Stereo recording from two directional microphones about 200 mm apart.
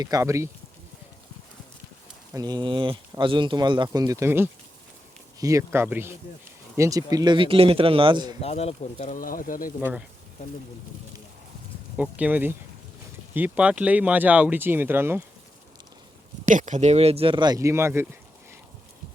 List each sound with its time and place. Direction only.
0.0 s speech: 15° right (ahead or behind)
2.3 s speech: 20° right (ahead or behind)
8.4 s speech: 30° left (ahead or behind)
11.9 s speech: 5° right (ahead or behind)
16.5 s speech: 40° right (ahead or behind); by 18.2 s 10° right (ahead or behind)